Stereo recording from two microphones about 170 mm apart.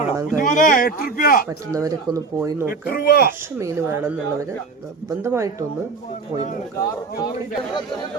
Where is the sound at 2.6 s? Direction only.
60° left (ahead or behind).